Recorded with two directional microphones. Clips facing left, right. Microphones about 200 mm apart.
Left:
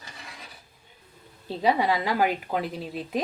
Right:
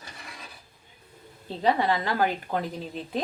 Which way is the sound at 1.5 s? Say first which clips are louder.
Left 1 dB; 10° left (ahead or behind).